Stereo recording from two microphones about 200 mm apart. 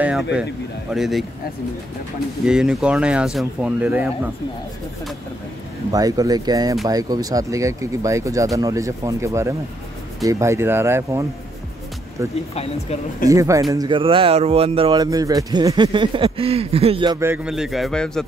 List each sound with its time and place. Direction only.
0.0 s a man's voice: 5° right (ahead or behind)
2.4 s a man's voice: 5° right (ahead or behind)
5.9 s speech: 20° right (ahead or behind)
17.2 s a man's voice: 5° right (ahead or behind)